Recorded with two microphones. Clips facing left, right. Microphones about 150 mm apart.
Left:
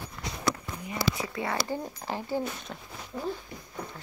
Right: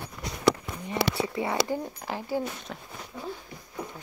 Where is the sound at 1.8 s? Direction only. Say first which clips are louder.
Even; 5° right (ahead or behind).